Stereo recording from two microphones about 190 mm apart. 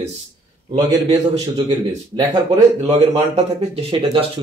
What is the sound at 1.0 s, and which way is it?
A man's voice, 35° right (ahead or behind).